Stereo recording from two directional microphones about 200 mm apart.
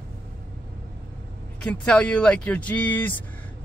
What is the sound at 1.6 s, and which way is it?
Speech, 5° left (ahead or behind).